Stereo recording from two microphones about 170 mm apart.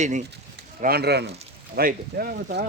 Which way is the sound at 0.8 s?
70° right (ahead or behind).